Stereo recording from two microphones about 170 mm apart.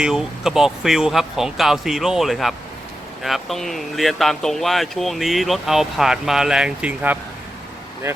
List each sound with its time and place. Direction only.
0.0 s speech: 5° right (ahead or behind)